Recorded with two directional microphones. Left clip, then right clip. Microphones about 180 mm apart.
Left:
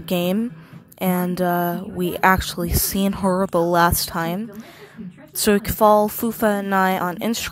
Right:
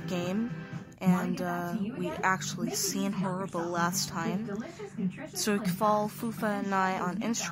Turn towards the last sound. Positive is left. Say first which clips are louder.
# left 10 dB
turn(degrees=50)  # may be behind; listen again after turning